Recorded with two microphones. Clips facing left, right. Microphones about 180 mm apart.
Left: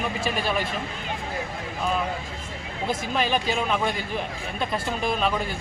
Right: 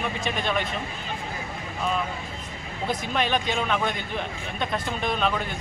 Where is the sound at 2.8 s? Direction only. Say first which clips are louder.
Left 1 dB; centre (ahead or behind).